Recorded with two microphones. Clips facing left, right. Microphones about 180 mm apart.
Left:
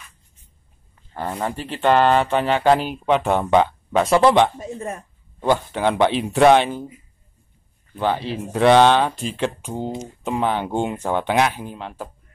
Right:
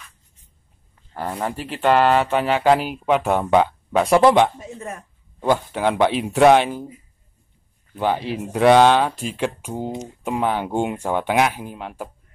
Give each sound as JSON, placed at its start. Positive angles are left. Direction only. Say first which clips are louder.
{"t": 1.1, "sound": "speech", "louder": "even", "side_deg": -5}
{"t": 4.6, "sound": "speech", "louder": "left 4 dB", "side_deg": 35}
{"t": 5.4, "sound": "speech", "louder": "even", "side_deg": -5}
{"t": 7.9, "sound": "speech", "louder": "even", "side_deg": -10}